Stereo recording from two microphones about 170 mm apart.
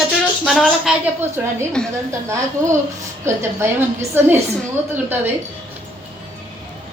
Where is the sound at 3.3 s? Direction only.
15° right (ahead or behind).